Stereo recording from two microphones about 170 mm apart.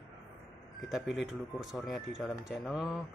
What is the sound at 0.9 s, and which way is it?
Speech, centre (ahead or behind).